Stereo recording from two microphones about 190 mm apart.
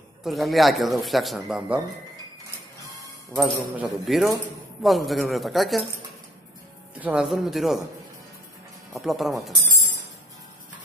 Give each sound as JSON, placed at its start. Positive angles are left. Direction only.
{"t": 0.2, "sound": "speech", "side_deg": 0}
{"t": 3.0, "sound": "speech", "side_deg": 0}
{"t": 7.0, "sound": "speech", "side_deg": -5}
{"t": 8.9, "sound": "speech", "side_deg": 0}